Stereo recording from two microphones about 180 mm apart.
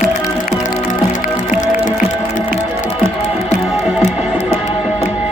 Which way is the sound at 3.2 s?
40° left (ahead or behind).